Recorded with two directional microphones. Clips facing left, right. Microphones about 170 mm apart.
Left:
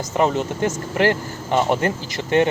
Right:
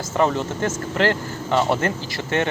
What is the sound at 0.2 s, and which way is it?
Speech, 15° left (ahead or behind).